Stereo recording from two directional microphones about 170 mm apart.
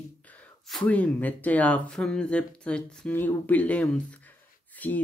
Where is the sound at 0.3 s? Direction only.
5° left (ahead or behind).